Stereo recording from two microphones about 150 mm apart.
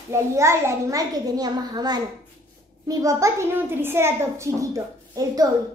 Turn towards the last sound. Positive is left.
turn(degrees=-20)  # may be behind; listen again after turning